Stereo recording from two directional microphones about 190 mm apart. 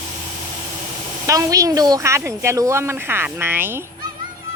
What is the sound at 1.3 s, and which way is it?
Speech, 15° right (ahead or behind).